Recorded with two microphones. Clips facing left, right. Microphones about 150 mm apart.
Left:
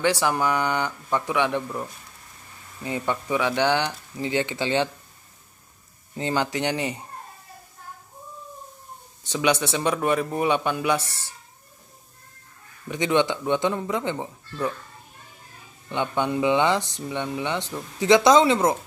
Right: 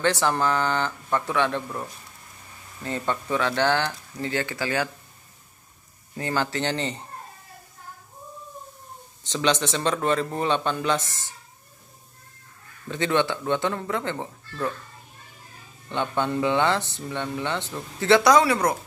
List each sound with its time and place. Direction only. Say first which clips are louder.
0.0 s speech: even; 10° left (ahead or behind)
2.8 s speech: left 1 dB; 15° left (ahead or behind)
6.1 s speech: left 1 dB; 20° left (ahead or behind)
9.3 s speech: left 1 dB; 10° left (ahead or behind)
12.8 s speech: left 2 dB; 15° left (ahead or behind)
15.9 s speech: left 1 dB; 15° left (ahead or behind)